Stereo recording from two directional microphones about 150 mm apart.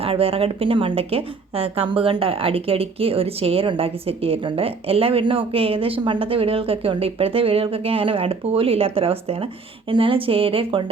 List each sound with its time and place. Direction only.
0.0 s a woman's voice: 40° right (ahead or behind)